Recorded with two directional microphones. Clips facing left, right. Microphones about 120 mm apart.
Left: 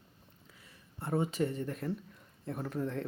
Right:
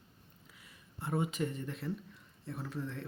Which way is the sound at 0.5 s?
30° left (ahead or behind).